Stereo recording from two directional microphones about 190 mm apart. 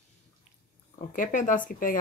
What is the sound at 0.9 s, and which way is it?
Speech, 45° left (ahead or behind).